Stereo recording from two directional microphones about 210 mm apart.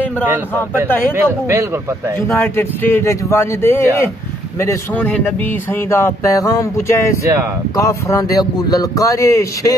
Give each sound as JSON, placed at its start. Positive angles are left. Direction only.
{"t": 1.1, "sound": "speech", "side_deg": -10}
{"t": 2.2, "sound": "speech", "side_deg": 10}